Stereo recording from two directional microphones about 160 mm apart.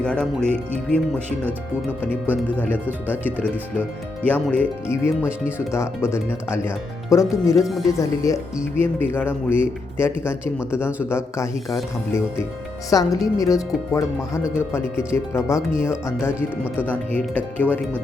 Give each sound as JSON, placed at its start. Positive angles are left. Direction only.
{"t": 0.0, "sound": "speech", "side_deg": 5}
{"t": 2.3, "sound": "speech", "side_deg": 10}
{"t": 4.2, "sound": "speech", "side_deg": 10}
{"t": 7.6, "sound": "speech", "side_deg": 0}
{"t": 7.9, "sound": "speech", "side_deg": 20}
{"t": 12.9, "sound": "speech", "side_deg": 20}